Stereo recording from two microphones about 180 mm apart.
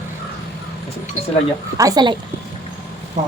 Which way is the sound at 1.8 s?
20° right (ahead or behind).